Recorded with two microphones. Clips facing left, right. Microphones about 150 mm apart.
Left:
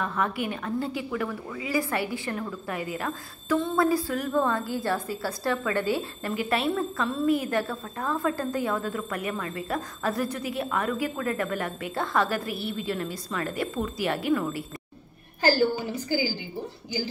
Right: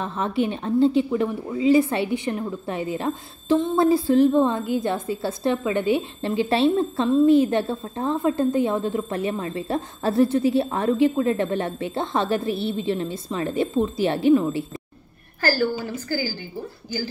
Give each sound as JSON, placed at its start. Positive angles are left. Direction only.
{"t": 0.0, "sound": "a woman's voice", "side_deg": -25}
{"t": 15.4, "sound": "a woman's voice", "side_deg": 15}